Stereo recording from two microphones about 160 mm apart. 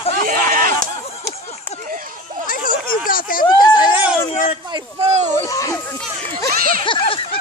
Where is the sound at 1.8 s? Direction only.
60° right (ahead or behind).